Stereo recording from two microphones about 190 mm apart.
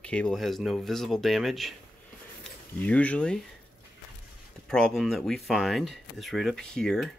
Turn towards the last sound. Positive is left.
turn(degrees=5)  # may be behind; listen again after turning